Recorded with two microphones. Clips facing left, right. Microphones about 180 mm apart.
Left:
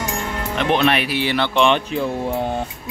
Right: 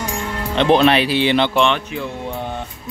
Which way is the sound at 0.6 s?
30° right (ahead or behind).